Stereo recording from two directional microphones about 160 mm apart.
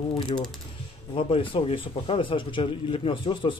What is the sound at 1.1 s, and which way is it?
A man's voice, 35° left (ahead or behind).